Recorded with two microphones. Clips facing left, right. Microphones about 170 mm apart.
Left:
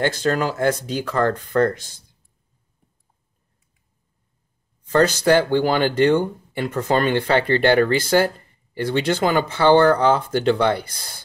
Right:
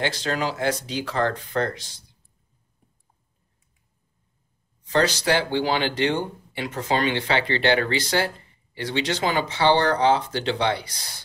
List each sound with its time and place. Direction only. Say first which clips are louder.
0.0 s speech: left 5 dB; 50° left (ahead or behind)
4.8 s speech: left 5 dB; 50° left (ahead or behind)